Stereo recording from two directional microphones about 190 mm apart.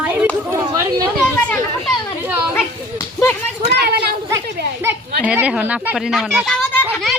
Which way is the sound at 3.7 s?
60° right (ahead or behind).